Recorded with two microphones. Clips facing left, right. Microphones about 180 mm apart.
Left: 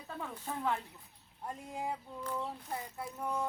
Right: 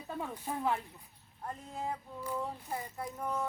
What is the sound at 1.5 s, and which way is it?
Speech, 10° left (ahead or behind).